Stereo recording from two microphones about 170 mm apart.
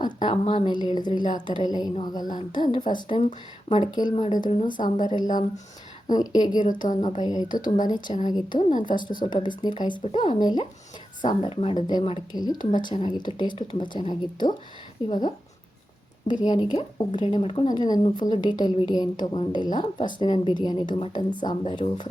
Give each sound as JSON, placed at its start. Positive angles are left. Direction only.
{"t": 0.0, "sound": "speech", "side_deg": 25}
{"t": 4.7, "sound": "speech", "side_deg": 50}
{"t": 6.1, "sound": "speech", "side_deg": 25}
{"t": 6.8, "sound": "speech", "side_deg": 35}
{"t": 7.2, "sound": "speech", "side_deg": 25}
{"t": 16.4, "sound": "speech", "side_deg": 25}